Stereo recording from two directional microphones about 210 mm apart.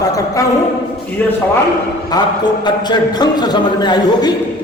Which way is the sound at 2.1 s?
20° left (ahead or behind).